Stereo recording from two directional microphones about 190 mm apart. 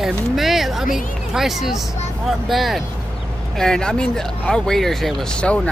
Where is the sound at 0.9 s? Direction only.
Centre (ahead or behind).